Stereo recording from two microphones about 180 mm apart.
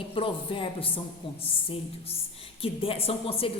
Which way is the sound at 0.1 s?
30° left (ahead or behind).